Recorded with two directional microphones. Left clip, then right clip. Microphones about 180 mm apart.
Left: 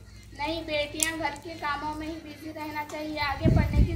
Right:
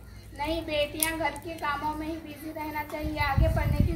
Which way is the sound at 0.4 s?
Centre (ahead or behind).